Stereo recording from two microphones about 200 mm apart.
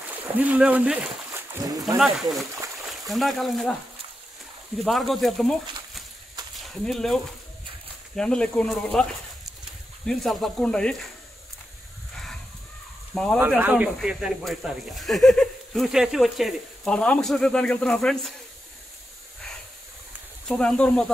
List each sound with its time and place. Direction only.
0.4 s speech: 5° right (ahead or behind)
1.5 s speech: 15° right (ahead or behind)
2.9 s speech: centre (ahead or behind)
4.8 s speech: centre (ahead or behind)
6.5 s speech: centre (ahead or behind)
8.2 s speech: 5° left (ahead or behind)
10.0 s speech: centre (ahead or behind)
13.1 s speech: 5° left (ahead or behind)
13.6 s speech: 10° right (ahead or behind)
20.4 s speech: 5° left (ahead or behind)